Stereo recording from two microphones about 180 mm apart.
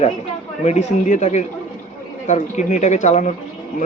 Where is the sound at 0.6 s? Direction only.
40° left (ahead or behind).